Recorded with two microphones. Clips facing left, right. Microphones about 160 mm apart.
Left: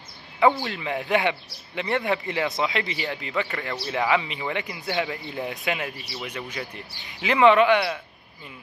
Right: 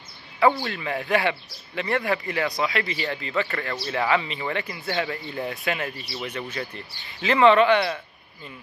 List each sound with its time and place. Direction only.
0.7 s a man's voice: 20° left (ahead or behind)